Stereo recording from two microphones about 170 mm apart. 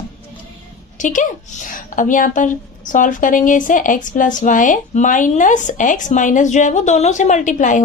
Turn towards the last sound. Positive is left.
turn(degrees=45)  # may be behind; listen again after turning